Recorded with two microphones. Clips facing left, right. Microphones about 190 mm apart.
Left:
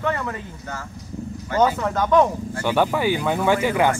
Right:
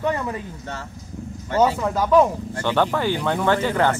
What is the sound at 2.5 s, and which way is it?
Speech, 10° left (ahead or behind).